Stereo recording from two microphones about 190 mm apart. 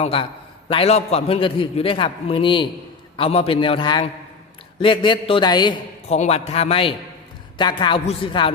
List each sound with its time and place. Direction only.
0.0 s a man's voice: 30° left (ahead or behind)
6.1 s a man's voice: 35° left (ahead or behind)